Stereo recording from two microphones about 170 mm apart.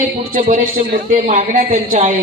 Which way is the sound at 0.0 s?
50° right (ahead or behind).